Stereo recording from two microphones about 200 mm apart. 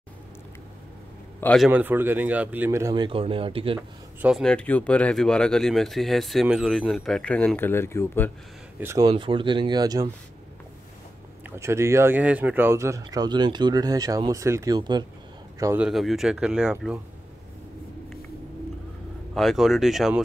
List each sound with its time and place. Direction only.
1.4 s a man's voice: 5° left (ahead or behind)
1.7 s speech: 10° right (ahead or behind); by 3.8 s 25° right (ahead or behind)
4.2 s speech: centre (ahead or behind)
8.7 s speech: 15° right (ahead or behind)
9.1 s speech: 25° right (ahead or behind)
11.4 s speech: 15° right (ahead or behind)
15.6 s speech: 10° right (ahead or behind)
19.3 s speech: centre (ahead or behind)